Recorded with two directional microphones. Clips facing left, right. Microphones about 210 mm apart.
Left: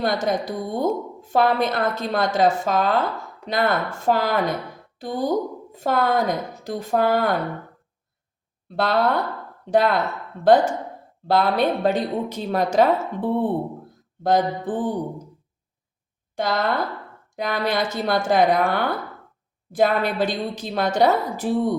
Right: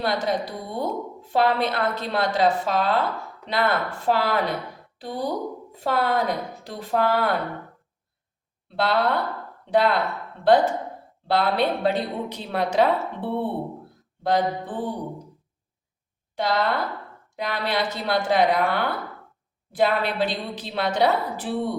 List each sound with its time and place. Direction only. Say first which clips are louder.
0.0 s a woman's voice: left 2 dB; 45° left (ahead or behind)
8.7 s a woman's voice: left 2 dB; 45° left (ahead or behind)
16.3 s a woman's voice: left 1 dB; 45° left (ahead or behind)